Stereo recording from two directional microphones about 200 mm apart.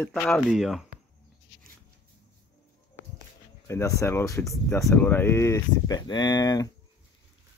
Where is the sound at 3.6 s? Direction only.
15° left (ahead or behind).